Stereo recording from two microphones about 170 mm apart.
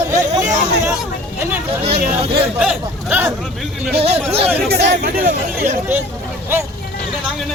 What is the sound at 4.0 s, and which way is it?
Speech, 35° right (ahead or behind).